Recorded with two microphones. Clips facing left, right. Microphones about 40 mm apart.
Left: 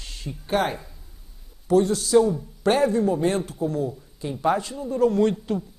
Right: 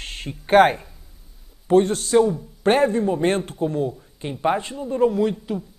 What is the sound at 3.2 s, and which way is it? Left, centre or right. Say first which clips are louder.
Speech: right 2 dB; right.